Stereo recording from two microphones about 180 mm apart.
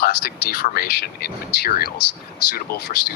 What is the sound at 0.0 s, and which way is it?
Speech, 60° left (ahead or behind).